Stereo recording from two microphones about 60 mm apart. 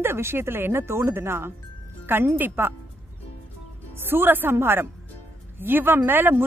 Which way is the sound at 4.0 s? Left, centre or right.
Right.